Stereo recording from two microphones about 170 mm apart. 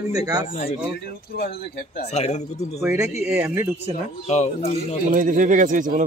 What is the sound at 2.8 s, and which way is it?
Speech, 15° right (ahead or behind).